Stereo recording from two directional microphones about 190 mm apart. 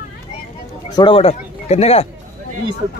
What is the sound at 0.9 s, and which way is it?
Speech, 25° left (ahead or behind).